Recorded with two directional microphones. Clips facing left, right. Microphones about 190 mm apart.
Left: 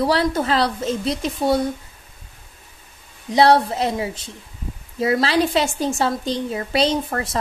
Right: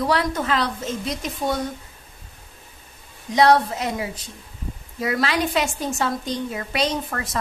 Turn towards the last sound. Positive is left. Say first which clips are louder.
# left 4 dB
turn(degrees=30)  # may be behind; listen again after turning